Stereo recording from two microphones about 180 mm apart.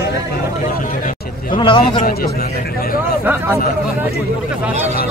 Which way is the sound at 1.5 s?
25° left (ahead or behind).